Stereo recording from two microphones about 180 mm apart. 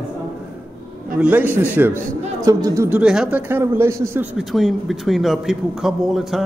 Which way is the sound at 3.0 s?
5° right (ahead or behind).